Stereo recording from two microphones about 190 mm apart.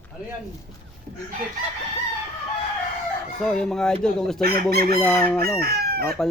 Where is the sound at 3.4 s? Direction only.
5° left (ahead or behind).